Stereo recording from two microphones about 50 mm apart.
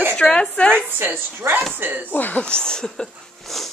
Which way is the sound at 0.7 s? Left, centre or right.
Right.